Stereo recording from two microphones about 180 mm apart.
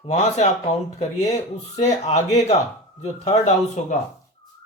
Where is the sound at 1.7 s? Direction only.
40° left (ahead or behind).